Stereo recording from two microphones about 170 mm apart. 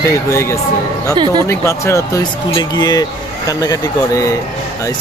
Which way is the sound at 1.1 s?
25° right (ahead or behind).